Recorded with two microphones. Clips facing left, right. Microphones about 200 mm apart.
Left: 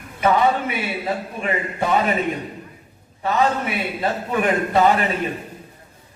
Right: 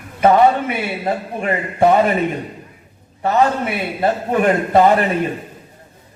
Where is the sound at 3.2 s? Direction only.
50° right (ahead or behind).